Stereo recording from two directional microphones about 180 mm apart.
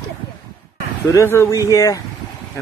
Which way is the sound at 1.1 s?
15° left (ahead or behind).